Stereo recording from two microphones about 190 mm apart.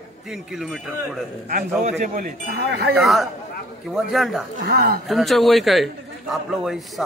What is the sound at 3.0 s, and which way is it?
A man's voice, centre (ahead or behind).